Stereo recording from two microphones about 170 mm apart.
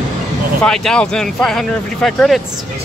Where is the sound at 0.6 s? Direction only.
5° left (ahead or behind).